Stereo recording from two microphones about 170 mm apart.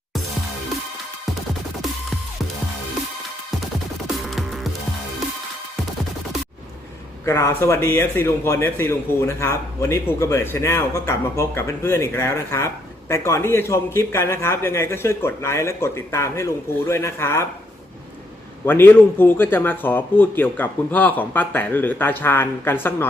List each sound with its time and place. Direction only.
4.0 s music: centre (ahead or behind)
7.3 s a man's voice: 15° left (ahead or behind)
18.6 s a man's voice: 10° left (ahead or behind)